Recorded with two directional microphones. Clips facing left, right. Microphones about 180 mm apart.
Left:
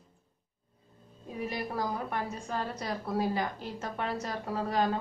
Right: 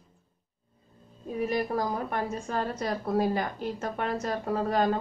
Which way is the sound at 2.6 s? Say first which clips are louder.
Right 5 dB; 50° right (ahead or behind).